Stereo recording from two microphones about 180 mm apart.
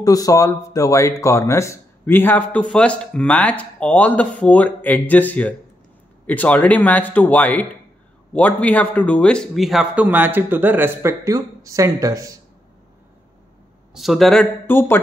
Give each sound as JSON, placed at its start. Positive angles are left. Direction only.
{"t": 0.0, "sound": "a man's voice", "side_deg": 20}
{"t": 13.9, "sound": "speech", "side_deg": 0}